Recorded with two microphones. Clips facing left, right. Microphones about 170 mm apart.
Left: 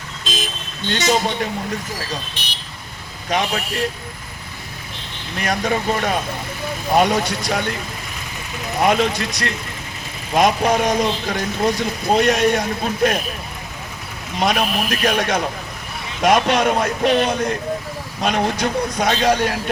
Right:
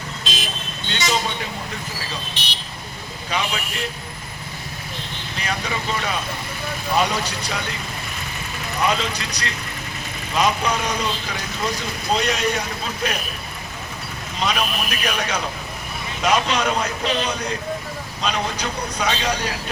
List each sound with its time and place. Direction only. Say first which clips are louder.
0.9 s speech: left 5 dB; 45° left (ahead or behind)
3.2 s speech: left 5 dB; 45° left (ahead or behind)
5.4 s speech: left 7 dB; 50° left (ahead or behind)
8.8 s speech: left 6 dB; 55° left (ahead or behind)
14.3 s speech: left 5 dB; 50° left (ahead or behind)